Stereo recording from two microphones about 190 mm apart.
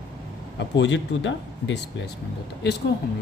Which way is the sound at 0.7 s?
70° left (ahead or behind).